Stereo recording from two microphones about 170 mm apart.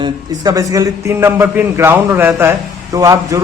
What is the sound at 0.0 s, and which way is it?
A man's voice, 20° right (ahead or behind).